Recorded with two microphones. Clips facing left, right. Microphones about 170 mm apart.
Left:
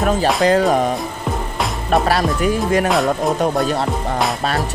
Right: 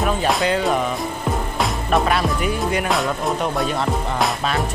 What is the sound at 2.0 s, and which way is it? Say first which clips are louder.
Speech: left 3 dB; 40° left (ahead or behind).